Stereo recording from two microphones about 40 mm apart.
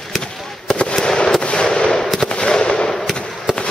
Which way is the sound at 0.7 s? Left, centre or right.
Left.